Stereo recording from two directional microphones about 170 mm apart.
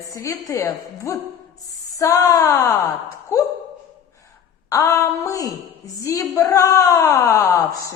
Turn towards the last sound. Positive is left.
turn(degrees=20)  # may be behind; listen again after turning